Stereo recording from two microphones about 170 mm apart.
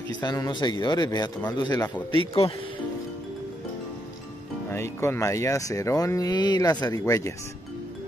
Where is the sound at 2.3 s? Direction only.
35° left (ahead or behind).